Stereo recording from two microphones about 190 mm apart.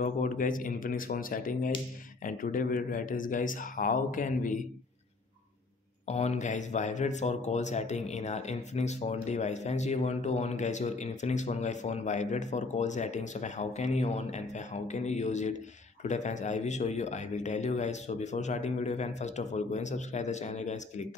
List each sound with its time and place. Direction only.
0.0 s speech: 45° left (ahead or behind)
6.0 s speech: 35° left (ahead or behind)